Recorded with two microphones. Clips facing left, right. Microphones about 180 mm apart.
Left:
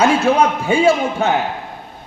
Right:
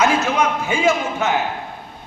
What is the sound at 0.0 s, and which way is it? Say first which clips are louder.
A man's voice: left 4 dB; 30° left (ahead or behind).